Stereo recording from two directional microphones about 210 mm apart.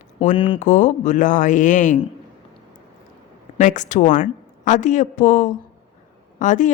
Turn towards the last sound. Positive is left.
turn(degrees=35)  # may be behind; listen again after turning